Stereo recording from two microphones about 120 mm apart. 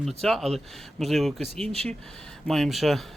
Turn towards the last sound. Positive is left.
turn(degrees=0)  # may be behind; listen again after turning